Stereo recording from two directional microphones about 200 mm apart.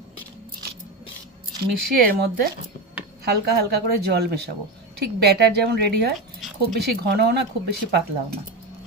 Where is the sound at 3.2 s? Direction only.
50° right (ahead or behind).